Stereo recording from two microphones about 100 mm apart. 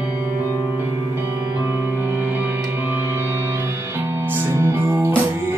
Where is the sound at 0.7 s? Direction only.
20° right (ahead or behind).